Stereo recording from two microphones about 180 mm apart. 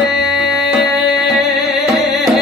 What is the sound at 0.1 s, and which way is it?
Music, centre (ahead or behind).